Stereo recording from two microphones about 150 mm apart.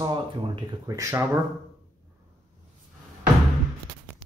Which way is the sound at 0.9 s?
20° right (ahead or behind).